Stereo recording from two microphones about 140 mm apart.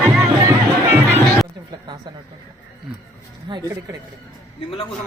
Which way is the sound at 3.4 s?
30° right (ahead or behind).